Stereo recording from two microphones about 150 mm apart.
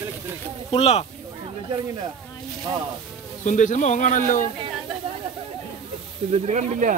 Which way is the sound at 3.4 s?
55° left (ahead or behind).